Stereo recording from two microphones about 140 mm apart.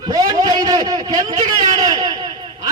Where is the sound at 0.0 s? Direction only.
25° right (ahead or behind).